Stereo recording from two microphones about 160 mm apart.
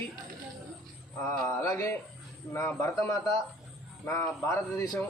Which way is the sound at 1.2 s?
15° left (ahead or behind).